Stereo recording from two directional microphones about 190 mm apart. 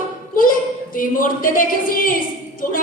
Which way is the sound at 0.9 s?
45° left (ahead or behind).